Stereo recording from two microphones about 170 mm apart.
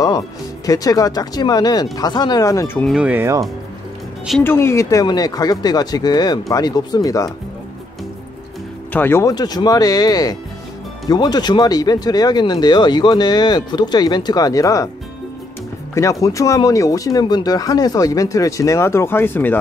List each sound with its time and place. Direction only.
0.7 s speech: 20° left (ahead or behind)
2.9 s speech: 10° right (ahead or behind)
4.4 s speech: 15° left (ahead or behind)
8.9 s speech: 15° left (ahead or behind)
15.9 s speech: 20° left (ahead or behind)